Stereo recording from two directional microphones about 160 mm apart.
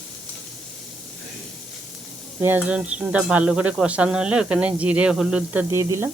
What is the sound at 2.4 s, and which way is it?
Speech, 10° right (ahead or behind).